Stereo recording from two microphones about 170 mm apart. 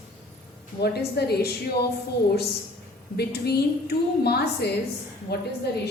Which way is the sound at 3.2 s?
70° left (ahead or behind).